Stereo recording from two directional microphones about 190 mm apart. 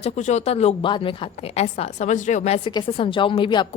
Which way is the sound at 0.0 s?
40° left (ahead or behind).